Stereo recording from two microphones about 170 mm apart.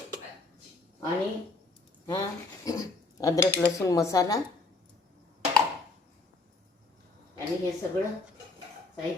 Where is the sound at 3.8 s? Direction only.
20° left (ahead or behind).